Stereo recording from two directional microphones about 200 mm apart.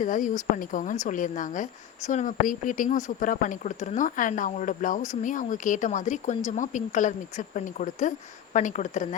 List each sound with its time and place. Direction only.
0.0 s speech: 40° left (ahead or behind)